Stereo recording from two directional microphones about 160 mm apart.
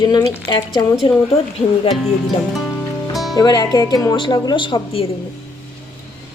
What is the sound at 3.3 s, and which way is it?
A woman's voice, 25° left (ahead or behind).